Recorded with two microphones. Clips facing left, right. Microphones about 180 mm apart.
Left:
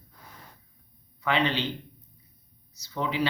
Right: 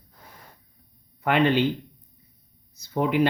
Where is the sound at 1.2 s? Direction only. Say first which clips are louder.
Right 6 dB; 50° right (ahead or behind).